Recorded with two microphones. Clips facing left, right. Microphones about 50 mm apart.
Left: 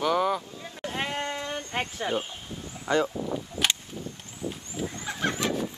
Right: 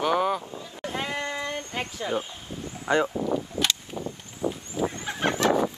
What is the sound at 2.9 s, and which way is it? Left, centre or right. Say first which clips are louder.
Speech: right 2 dB; right.